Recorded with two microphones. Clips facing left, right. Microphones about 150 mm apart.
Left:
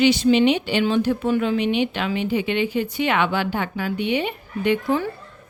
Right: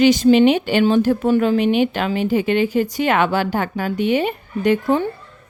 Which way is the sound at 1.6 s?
45° right (ahead or behind).